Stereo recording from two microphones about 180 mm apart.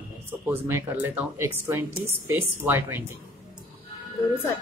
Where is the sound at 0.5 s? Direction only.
15° right (ahead or behind).